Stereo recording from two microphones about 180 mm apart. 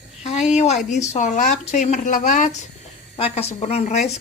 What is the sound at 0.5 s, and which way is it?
Speech, 35° left (ahead or behind).